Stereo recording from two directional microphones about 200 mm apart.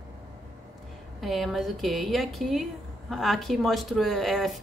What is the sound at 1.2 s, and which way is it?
A woman's voice, centre (ahead or behind).